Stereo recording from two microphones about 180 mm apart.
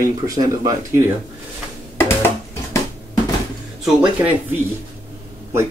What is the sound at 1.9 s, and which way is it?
Music, 15° left (ahead or behind).